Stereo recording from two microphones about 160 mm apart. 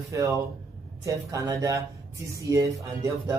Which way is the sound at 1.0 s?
20° right (ahead or behind).